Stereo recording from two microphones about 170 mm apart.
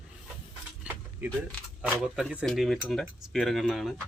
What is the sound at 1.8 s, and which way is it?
Speech, 5° right (ahead or behind).